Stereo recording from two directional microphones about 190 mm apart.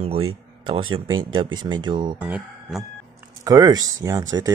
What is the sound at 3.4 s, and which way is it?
Speech, 20° right (ahead or behind).